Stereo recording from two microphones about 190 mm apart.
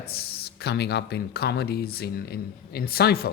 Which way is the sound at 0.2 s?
60° left (ahead or behind).